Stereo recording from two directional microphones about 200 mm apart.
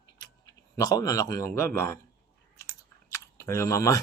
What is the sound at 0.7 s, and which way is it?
A man's voice, 20° left (ahead or behind).